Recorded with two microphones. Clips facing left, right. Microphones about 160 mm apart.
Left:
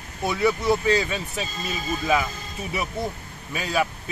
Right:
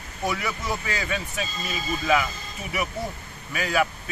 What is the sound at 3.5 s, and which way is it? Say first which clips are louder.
Speech: even; 20° left (ahead or behind).